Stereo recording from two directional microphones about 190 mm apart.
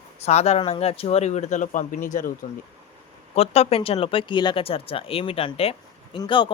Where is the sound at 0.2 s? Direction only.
35° left (ahead or behind).